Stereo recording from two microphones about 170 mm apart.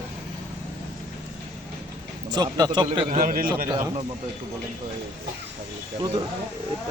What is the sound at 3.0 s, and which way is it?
Speech, 55° right (ahead or behind).